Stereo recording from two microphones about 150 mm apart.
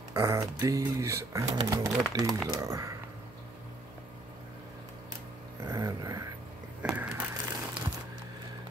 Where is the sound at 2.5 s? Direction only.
20° right (ahead or behind).